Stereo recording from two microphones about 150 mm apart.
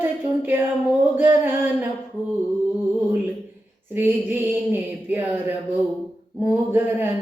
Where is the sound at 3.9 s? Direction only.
15° right (ahead or behind).